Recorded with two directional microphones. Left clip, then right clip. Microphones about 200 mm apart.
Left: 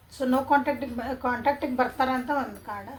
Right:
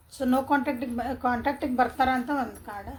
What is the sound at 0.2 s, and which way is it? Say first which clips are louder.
A woman's voice: left 2 dB; 60° right (ahead or behind).